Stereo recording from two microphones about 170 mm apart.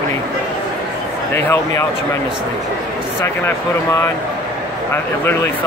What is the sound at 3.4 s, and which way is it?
Speech, 15° left (ahead or behind).